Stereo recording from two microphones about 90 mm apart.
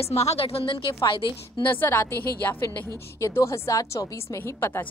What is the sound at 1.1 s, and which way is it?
Speech, 65° left (ahead or behind).